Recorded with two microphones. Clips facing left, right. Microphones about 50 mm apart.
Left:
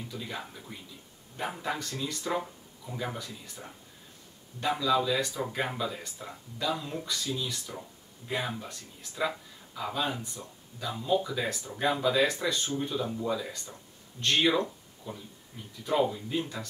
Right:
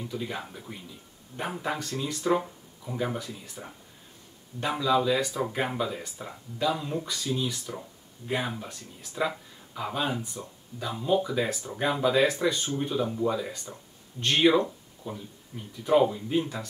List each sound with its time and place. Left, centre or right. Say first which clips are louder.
0.2 s speech: right 4 dB; centre
1.9 s speech: right 6 dB; centre